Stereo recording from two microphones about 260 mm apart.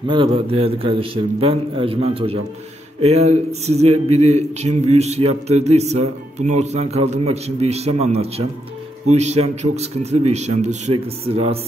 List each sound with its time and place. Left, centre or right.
0.0 s a man's voice: centre